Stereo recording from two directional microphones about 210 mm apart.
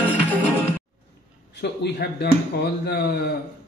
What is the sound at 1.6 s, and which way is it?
Speech, 50° left (ahead or behind).